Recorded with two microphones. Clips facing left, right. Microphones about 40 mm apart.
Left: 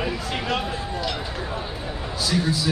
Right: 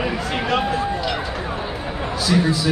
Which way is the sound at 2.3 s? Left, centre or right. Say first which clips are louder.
Right 6 dB; right.